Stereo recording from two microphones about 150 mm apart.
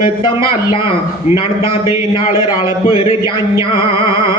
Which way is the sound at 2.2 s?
35° left (ahead or behind).